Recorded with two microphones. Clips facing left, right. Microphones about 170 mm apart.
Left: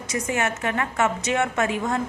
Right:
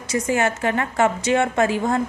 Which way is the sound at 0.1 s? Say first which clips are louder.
Right 5 dB; 30° right (ahead or behind).